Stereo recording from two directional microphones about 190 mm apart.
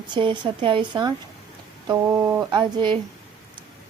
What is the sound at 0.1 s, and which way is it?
A woman's voice, 25° right (ahead or behind).